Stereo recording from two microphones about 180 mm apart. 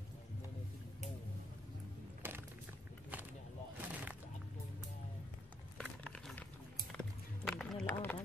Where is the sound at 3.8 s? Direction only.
10° right (ahead or behind).